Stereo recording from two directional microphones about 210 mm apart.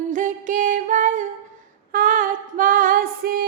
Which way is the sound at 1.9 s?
40° right (ahead or behind).